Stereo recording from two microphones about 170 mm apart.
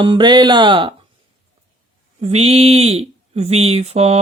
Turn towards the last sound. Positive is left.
turn(degrees=-40)  # may be behind; listen again after turning